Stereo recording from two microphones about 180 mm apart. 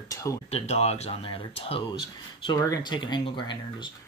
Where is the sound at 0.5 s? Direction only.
35° left (ahead or behind).